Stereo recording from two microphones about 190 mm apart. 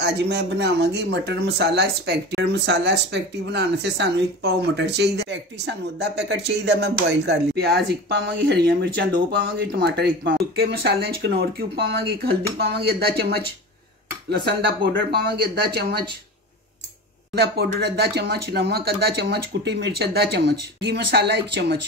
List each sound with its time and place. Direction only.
0.0 s speech: 60° right (ahead or behind)
15.1 s speech: 55° right (ahead or behind)
17.4 s speech: 60° right (ahead or behind)